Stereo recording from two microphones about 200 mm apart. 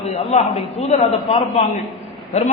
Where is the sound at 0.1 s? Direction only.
30° left (ahead or behind).